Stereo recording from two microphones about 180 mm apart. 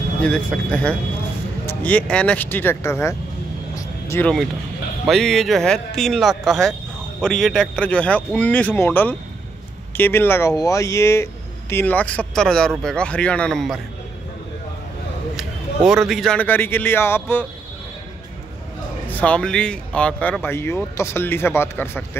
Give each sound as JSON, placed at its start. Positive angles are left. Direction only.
{"t": 0.2, "sound": "speech", "side_deg": 5}
{"t": 3.7, "sound": "vehicle", "side_deg": 15}
{"t": 5.0, "sound": "speech", "side_deg": 0}
{"t": 15.3, "sound": "a man's voice", "side_deg": 0}
{"t": 19.0, "sound": "speech", "side_deg": 10}